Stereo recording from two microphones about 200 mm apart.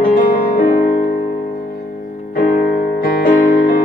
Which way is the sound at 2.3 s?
45° left (ahead or behind).